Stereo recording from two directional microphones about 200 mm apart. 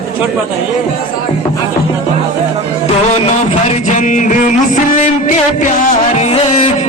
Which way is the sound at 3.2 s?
35° left (ahead or behind).